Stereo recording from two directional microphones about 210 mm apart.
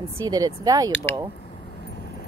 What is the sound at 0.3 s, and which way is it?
Speech, 15° right (ahead or behind).